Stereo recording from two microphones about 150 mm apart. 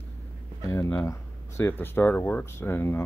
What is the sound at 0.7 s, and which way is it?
Speech, 20° left (ahead or behind).